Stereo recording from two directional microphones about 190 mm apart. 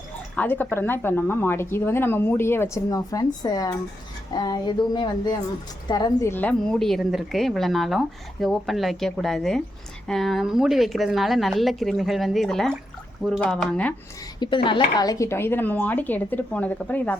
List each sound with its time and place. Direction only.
0.3 s speech: 10° left (ahead or behind)
4.4 s a sound: 20° left (ahead or behind)
5.9 s a woman's voice: 20° left (ahead or behind)
14.3 s speech: 25° left (ahead or behind); by 17.2 s 10° left (ahead or behind)